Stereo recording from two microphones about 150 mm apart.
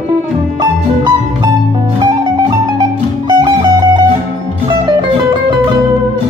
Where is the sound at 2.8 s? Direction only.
30° right (ahead or behind).